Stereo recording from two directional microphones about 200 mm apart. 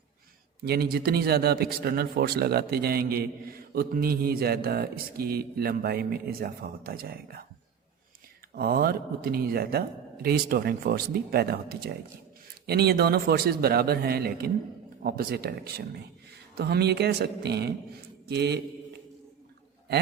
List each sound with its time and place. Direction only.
0.6 s a man's voice: 50° right (ahead or behind)
8.5 s a man's voice: 50° right (ahead or behind)